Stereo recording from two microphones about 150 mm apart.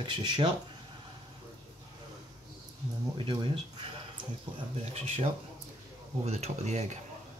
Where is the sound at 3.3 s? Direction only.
30° right (ahead or behind).